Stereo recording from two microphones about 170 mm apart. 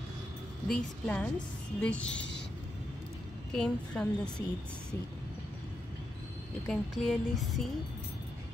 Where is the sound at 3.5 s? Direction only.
5° left (ahead or behind).